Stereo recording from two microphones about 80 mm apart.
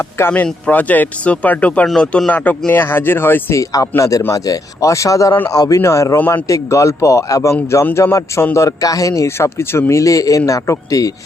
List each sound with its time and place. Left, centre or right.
0.0 s speech: left
0.4 s speech: centre
3.6 s a man's voice: left
6.1 s speech: left
6.5 s a man's voice: left